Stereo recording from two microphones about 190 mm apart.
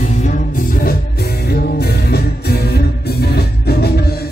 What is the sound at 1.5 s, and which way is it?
Music, 55° left (ahead or behind).